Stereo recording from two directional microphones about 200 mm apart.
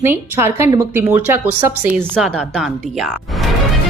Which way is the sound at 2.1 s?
5° left (ahead or behind).